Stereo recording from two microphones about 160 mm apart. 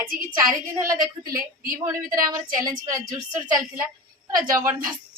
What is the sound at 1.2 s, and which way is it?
A woman's voice, 25° right (ahead or behind).